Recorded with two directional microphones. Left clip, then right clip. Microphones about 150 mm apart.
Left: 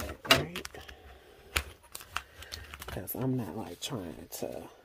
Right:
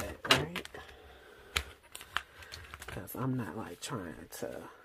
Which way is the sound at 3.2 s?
10° right (ahead or behind).